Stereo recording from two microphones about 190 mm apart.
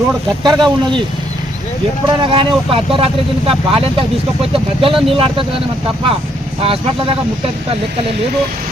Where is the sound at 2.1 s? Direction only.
25° right (ahead or behind).